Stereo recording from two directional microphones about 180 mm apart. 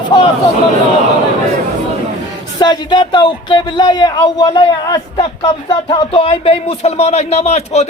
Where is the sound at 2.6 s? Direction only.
25° left (ahead or behind).